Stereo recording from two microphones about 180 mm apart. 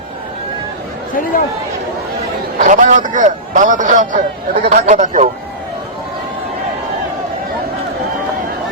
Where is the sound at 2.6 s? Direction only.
45° right (ahead or behind).